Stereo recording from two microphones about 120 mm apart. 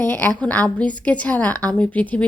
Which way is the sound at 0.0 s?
15° left (ahead or behind).